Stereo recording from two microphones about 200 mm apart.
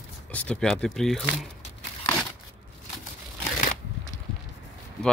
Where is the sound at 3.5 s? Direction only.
40° left (ahead or behind).